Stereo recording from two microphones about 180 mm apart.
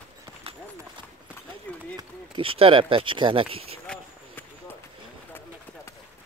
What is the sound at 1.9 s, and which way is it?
Speech, 30° right (ahead or behind).